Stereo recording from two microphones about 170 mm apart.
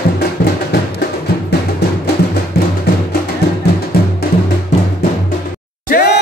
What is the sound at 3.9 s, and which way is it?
Music, 65° left (ahead or behind).